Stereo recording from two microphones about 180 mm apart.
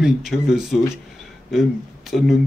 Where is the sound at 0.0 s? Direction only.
Centre (ahead or behind).